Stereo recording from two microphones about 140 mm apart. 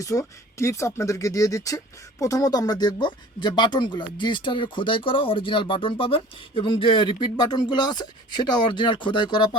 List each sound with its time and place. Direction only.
0.0 s speech: 25° left (ahead or behind)